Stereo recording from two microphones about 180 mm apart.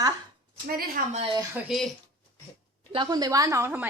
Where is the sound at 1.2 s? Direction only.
30° right (ahead or behind).